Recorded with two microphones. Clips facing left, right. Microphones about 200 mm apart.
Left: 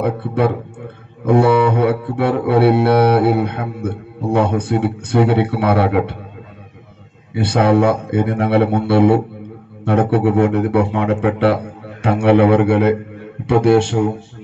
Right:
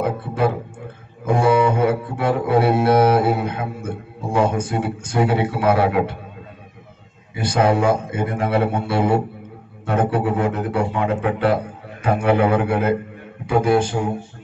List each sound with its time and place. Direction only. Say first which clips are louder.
0.0 s mantra: left 3 dB; 65° left (ahead or behind)
7.3 s mantra: left 4 dB; 65° left (ahead or behind)
9.8 s speech: left 5 dB; 65° left (ahead or behind)